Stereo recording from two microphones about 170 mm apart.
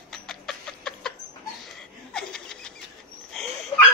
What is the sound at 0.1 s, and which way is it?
Music, centre (ahead or behind).